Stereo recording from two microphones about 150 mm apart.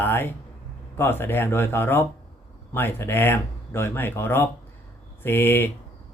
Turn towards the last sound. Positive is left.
turn(degrees=15)  # may be behind; listen again after turning